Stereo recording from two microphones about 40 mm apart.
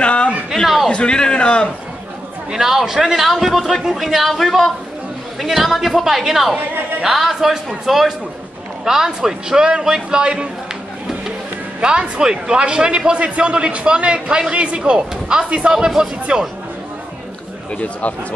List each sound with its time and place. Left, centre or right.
0.0 s a sound: left
0.8 s a man's voice: left
2.5 s a man's voice: centre
11.8 s a man's voice: right
17.7 s speech: left